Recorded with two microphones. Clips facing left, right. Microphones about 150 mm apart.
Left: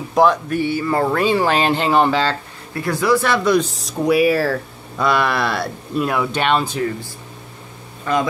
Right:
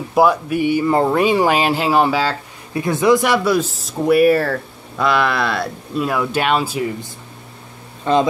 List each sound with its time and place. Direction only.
0.1 s speech: 10° right (ahead or behind)
2.8 s speech: 20° right (ahead or behind)
8.0 s speech: 25° right (ahead or behind)